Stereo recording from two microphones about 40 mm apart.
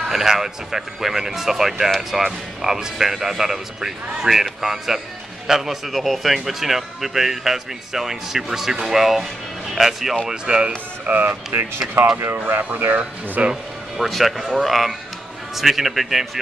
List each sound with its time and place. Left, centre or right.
0.1 s speech: centre
10.3 s speech: right
11.1 s speech: right
12.4 s speech: right
13.9 s speech: centre